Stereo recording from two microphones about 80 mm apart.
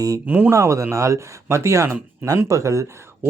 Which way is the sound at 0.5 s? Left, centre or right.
Right.